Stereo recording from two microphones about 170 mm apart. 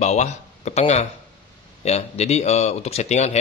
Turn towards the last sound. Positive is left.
turn(degrees=40)  # may be behind; listen again after turning